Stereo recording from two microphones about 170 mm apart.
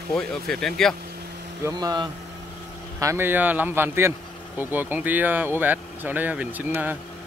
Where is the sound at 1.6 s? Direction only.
25° right (ahead or behind).